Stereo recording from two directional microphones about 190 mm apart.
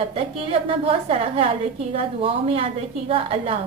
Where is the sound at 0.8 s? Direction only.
30° right (ahead or behind).